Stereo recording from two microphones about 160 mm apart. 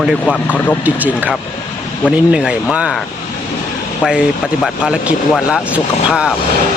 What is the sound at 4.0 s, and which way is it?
Speech, centre (ahead or behind).